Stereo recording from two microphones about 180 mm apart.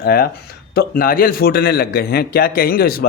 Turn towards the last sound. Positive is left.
turn(degrees=55)  # may be behind; listen again after turning